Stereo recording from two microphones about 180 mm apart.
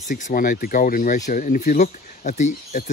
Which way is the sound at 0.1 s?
50° left (ahead or behind).